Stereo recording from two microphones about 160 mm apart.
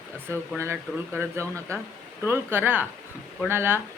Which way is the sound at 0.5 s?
15° right (ahead or behind).